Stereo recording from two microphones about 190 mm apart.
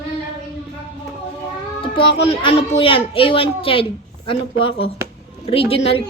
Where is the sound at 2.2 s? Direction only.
30° left (ahead or behind).